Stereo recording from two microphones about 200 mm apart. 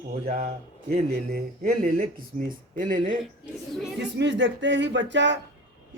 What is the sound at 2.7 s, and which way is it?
Speech, 40° right (ahead or behind).